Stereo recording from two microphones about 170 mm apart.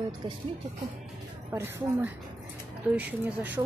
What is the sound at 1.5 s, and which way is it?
Speech, 15° right (ahead or behind).